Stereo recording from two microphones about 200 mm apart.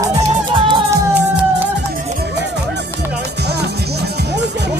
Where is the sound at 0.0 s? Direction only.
25° right (ahead or behind).